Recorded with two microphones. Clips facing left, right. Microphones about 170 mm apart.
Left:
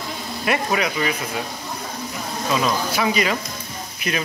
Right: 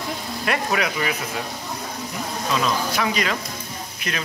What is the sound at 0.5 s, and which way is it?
Speech, 5° left (ahead or behind).